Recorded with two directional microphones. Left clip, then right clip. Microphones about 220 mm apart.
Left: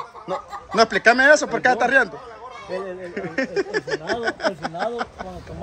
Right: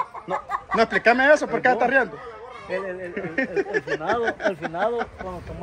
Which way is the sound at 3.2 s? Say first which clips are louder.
Left 1 dB; 5° left (ahead or behind).